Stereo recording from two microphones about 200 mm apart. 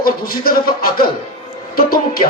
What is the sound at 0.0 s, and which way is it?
Speech, 50° left (ahead or behind).